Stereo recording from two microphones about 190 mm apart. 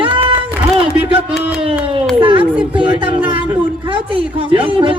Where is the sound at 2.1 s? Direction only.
30° right (ahead or behind).